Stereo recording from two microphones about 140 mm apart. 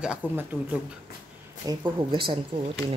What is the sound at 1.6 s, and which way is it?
Speech, 30° right (ahead or behind).